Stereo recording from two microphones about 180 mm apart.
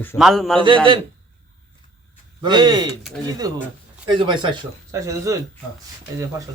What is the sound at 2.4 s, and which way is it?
Speech, 25° right (ahead or behind).